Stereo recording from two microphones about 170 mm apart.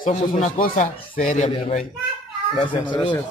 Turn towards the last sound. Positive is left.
turn(degrees=25)  # may be behind; listen again after turning